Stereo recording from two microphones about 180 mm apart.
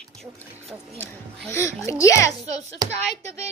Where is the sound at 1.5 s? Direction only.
15° left (ahead or behind).